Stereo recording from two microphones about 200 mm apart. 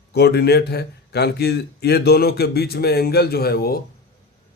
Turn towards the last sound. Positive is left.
turn(degrees=50)  # may be behind; listen again after turning